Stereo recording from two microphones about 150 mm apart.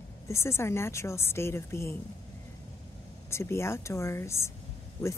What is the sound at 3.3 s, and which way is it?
Speech, 15° left (ahead or behind).